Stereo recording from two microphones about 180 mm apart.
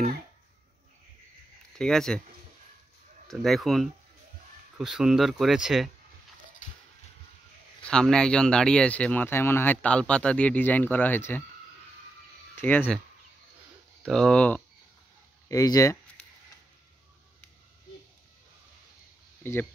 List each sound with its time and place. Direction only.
1.8 s speech: 5° left (ahead or behind)
3.3 s speech: centre (ahead or behind)
7.8 s speech: 5° left (ahead or behind)
12.5 s speech: 10° left (ahead or behind)
14.0 s speech: 5° left (ahead or behind)
15.4 s speech: 20° left (ahead or behind)